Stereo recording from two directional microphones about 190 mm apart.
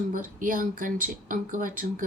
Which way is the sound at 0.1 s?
45° right (ahead or behind).